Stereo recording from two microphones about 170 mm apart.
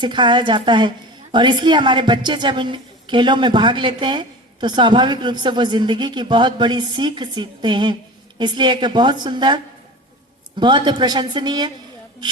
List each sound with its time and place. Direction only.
0.0 s a woman's voice: 25° right (ahead or behind)
10.6 s a woman's voice: 25° right (ahead or behind)